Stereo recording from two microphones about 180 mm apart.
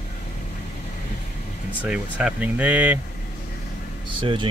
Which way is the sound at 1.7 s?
5° right (ahead or behind).